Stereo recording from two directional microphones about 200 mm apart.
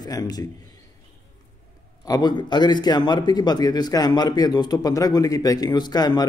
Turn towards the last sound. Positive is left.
turn(degrees=20)  # may be behind; listen again after turning